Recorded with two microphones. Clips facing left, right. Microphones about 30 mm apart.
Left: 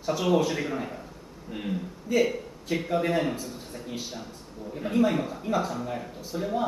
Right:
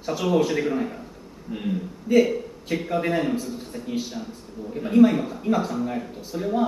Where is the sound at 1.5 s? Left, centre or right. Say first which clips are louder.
Right 4 dB; centre.